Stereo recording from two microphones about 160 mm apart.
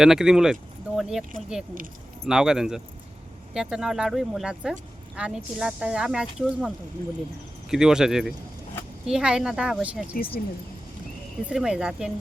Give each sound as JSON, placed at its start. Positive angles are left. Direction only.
{"t": 0.0, "sound": "speech", "side_deg": -5}
{"t": 2.2, "sound": "speech", "side_deg": -5}
{"t": 7.7, "sound": "speech", "side_deg": -5}
{"t": 10.4, "sound": "speech", "side_deg": 60}
{"t": 11.4, "sound": "speech", "side_deg": -5}